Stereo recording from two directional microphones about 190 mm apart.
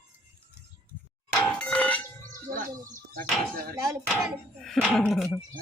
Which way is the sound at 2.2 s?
45° right (ahead or behind).